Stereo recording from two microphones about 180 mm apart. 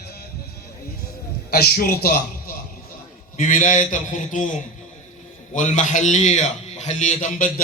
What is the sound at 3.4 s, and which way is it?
A man's voice, 45° left (ahead or behind).